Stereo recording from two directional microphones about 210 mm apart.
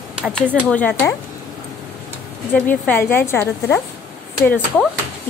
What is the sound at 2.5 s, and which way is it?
Speech, 5° left (ahead or behind).